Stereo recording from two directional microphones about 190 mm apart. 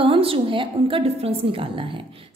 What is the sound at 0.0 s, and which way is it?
A woman's voice, 30° right (ahead or behind).